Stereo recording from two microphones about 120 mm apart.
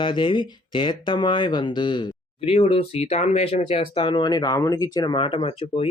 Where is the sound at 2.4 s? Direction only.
55° left (ahead or behind); by 4.9 s 30° left (ahead or behind).